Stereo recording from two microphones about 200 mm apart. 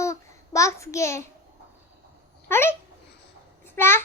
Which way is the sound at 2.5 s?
10° left (ahead or behind).